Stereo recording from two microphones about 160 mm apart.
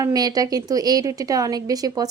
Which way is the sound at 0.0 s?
25° right (ahead or behind).